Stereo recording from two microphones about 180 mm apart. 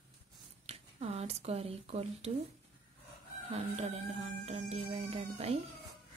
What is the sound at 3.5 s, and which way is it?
Speech, 35° right (ahead or behind).